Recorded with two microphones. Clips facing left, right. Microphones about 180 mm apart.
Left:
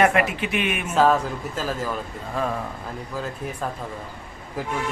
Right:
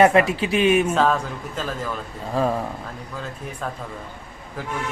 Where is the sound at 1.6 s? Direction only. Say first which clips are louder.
Left 1 dB; 5° left (ahead or behind).